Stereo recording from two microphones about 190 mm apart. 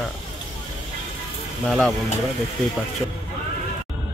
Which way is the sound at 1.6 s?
5° left (ahead or behind).